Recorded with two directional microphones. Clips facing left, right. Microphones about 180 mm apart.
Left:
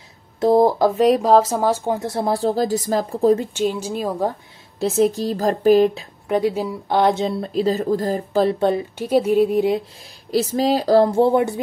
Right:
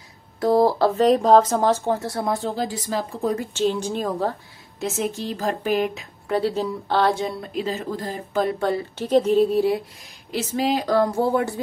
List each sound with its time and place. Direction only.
0.4 s speech: 20° left (ahead or behind)
3.5 s a sound: 5° left (ahead or behind)
4.7 s speech: 35° left (ahead or behind)
6.2 s speech: 15° left (ahead or behind)
8.9 s a sound: 10° left (ahead or behind)
10.3 s speech: 35° left (ahead or behind); by 11.6 s 20° left (ahead or behind)